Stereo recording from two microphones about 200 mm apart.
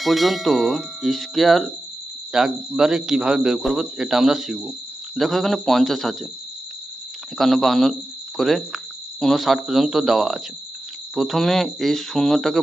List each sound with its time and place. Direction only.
0.0 s speech: centre (ahead or behind)
7.3 s speech: centre (ahead or behind)